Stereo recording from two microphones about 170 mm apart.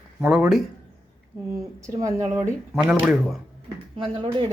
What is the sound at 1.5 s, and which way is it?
Speech, 20° right (ahead or behind).